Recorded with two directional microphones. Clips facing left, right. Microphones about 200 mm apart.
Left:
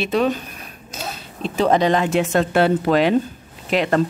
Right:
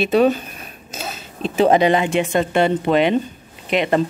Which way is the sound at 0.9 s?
25° right (ahead or behind).